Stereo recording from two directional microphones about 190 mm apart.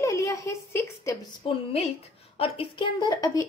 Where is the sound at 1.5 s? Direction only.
30° left (ahead or behind).